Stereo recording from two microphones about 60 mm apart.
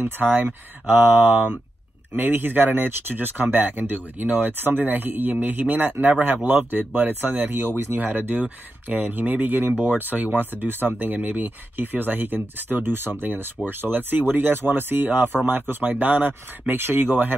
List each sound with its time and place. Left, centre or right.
0.0 s speech: right
1.3 s speech: right
2.1 s speech: right